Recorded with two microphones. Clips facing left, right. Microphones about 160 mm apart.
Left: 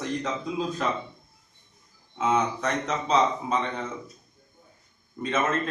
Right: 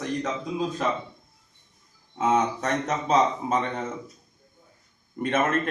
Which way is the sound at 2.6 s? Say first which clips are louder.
Right 1 dB; 45° right (ahead or behind).